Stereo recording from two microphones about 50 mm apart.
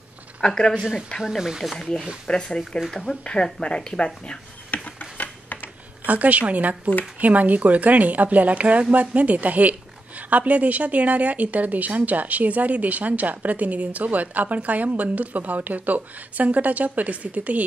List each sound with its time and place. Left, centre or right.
0.4 s speech: centre
1.2 s speech: centre
2.2 s speech: centre
4.8 s a sound: left
6.0 s speech: right